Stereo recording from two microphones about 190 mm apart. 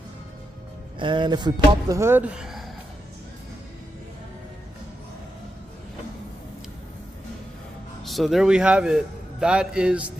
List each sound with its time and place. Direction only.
0.9 s speech: 25° right (ahead or behind); by 2.6 s 5° right (ahead or behind)
8.0 s a man's voice: centre (ahead or behind)